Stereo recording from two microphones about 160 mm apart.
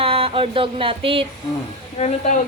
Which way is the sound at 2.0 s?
50° left (ahead or behind).